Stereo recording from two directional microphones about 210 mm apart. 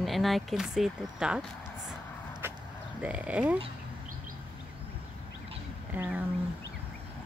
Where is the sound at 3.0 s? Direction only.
5° right (ahead or behind).